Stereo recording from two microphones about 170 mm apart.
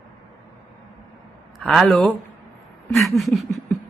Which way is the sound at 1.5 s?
Centre (ahead or behind).